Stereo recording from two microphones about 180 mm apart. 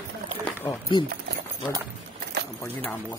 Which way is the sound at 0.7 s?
25° left (ahead or behind).